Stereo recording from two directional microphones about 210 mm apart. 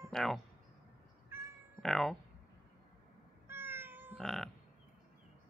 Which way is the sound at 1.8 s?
Centre (ahead or behind).